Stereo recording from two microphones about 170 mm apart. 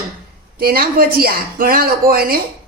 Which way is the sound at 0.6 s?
60° right (ahead or behind).